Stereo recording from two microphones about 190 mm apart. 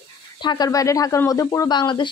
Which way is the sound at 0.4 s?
20° left (ahead or behind).